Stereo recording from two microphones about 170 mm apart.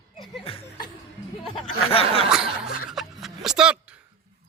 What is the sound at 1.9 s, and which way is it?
Chuckle, 35° left (ahead or behind).